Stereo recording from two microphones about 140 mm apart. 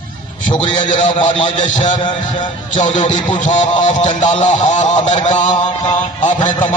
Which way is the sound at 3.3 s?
60° left (ahead or behind).